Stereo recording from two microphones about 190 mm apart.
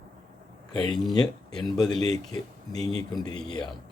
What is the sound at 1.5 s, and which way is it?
Speech, 5° left (ahead or behind).